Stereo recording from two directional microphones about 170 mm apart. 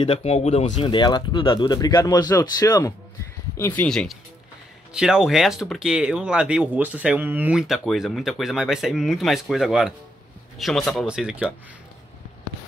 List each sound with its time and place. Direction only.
0.0 s speech: 35° left (ahead or behind); by 3.8 s 15° left (ahead or behind)
3.8 s speech: 5° left (ahead or behind)